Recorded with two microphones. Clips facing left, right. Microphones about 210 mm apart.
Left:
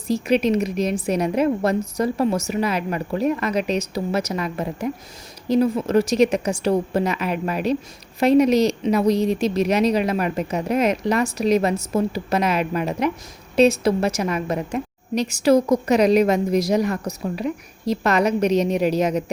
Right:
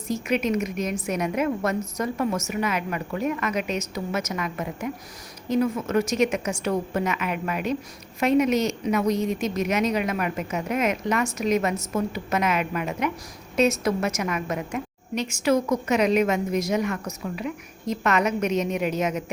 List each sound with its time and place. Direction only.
0.1 s a woman's voice: 35° left (ahead or behind)